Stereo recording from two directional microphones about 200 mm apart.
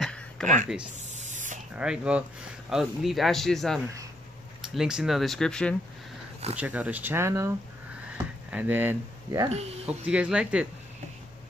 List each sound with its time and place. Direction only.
0.0 s a sound: centre (ahead or behind)
0.9 s spray: 35° right (ahead or behind)
1.8 s speech: 5° right (ahead or behind)
6.5 s speech: 5° right (ahead or behind)